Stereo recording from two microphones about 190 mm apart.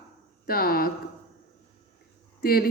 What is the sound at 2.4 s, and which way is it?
Speech, 50° left (ahead or behind).